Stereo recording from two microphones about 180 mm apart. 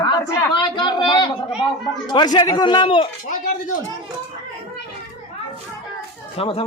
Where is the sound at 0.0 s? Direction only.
25° left (ahead or behind).